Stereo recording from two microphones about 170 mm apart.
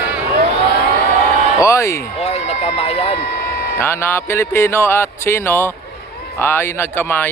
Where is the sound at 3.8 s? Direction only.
15° left (ahead or behind).